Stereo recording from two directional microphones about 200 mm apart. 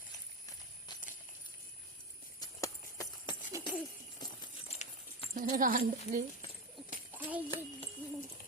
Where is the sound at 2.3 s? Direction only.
20° left (ahead or behind).